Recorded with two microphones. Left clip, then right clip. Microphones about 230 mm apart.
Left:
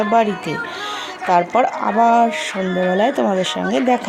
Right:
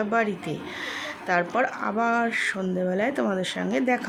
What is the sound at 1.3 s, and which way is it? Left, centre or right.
Speech, left.